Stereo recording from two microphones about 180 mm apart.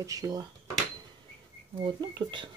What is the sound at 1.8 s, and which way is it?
Speech, 25° right (ahead or behind).